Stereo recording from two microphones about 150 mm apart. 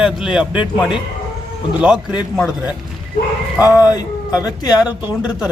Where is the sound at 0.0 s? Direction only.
5° right (ahead or behind).